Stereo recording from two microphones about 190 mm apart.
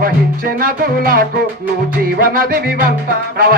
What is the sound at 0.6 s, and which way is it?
Music, 50° right (ahead or behind).